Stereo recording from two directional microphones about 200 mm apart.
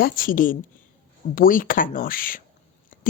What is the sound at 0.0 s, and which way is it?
Speech, 45° left (ahead or behind).